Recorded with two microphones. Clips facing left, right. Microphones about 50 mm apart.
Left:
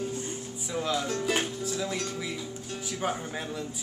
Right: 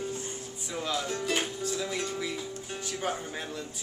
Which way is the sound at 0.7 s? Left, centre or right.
Centre.